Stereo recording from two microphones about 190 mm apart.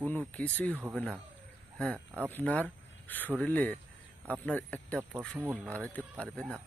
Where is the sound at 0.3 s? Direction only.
5° left (ahead or behind).